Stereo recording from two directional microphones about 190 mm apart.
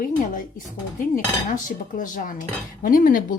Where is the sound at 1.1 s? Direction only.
45° left (ahead or behind).